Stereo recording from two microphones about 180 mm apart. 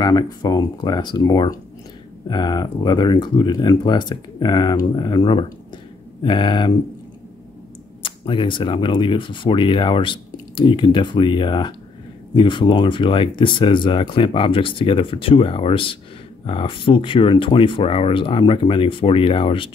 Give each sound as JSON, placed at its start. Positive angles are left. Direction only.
{"t": 0.0, "sound": "speech", "side_deg": 25}
{"t": 8.0, "sound": "speech", "side_deg": 25}